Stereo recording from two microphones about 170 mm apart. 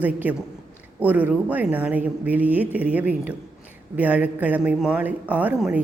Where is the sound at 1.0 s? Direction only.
10° right (ahead or behind).